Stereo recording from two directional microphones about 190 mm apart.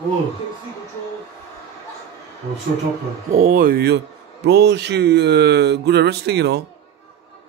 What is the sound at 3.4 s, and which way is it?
A man's voice, 45° right (ahead or behind).